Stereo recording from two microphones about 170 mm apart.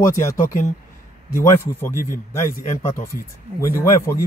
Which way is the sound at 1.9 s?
50° left (ahead or behind).